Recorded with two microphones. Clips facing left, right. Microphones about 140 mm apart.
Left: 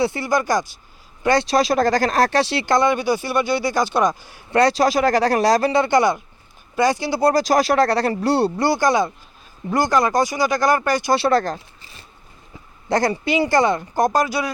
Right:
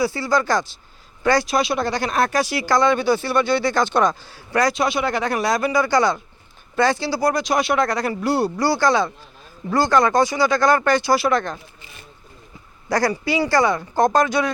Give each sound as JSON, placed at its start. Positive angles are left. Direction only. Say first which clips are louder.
{"t": 0.0, "sound": "speech", "louder": "even", "side_deg": 20}
{"t": 1.5, "sound": "speech", "louder": "left 4 dB", "side_deg": 40}
{"t": 4.5, "sound": "speech", "louder": "left 3 dB", "side_deg": 35}
{"t": 7.2, "sound": "speech", "louder": "left 6 dB", "side_deg": 35}
{"t": 11.1, "sound": "speech", "louder": "left 1 dB", "side_deg": 30}
{"t": 12.9, "sound": "speech", "louder": "left 1 dB", "side_deg": 20}